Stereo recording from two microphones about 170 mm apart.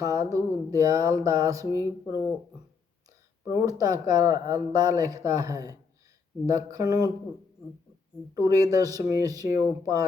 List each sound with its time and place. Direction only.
0.0 s speech: 20° right (ahead or behind)
3.4 s speech: 20° right (ahead or behind)
8.4 s speech: 20° right (ahead or behind)